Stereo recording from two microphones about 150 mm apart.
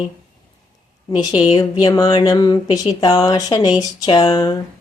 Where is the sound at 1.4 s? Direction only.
30° left (ahead or behind).